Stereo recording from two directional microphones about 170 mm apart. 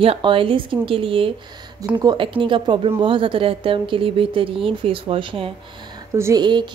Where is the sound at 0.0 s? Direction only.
30° right (ahead or behind).